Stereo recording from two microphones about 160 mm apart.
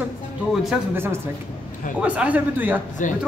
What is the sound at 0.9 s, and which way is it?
Speech, 15° right (ahead or behind).